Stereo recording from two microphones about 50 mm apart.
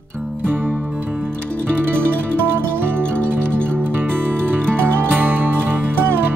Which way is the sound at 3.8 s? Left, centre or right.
Right.